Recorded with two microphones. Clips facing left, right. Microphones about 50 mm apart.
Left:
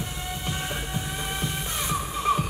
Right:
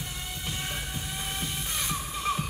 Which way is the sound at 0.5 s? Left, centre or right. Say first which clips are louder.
Left 3 dB; centre.